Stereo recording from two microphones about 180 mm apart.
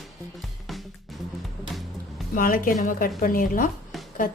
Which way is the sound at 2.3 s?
50° left (ahead or behind).